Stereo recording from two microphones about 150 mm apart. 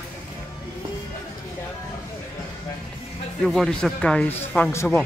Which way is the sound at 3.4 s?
Centre (ahead or behind).